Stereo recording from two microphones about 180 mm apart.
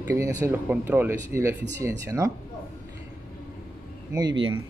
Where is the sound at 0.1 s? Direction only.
15° right (ahead or behind).